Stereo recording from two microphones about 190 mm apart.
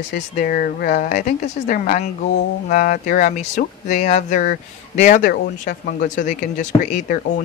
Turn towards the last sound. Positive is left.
turn(degrees=45)  # may be behind; listen again after turning